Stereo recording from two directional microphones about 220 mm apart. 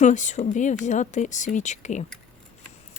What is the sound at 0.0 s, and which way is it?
Speech, 35° left (ahead or behind).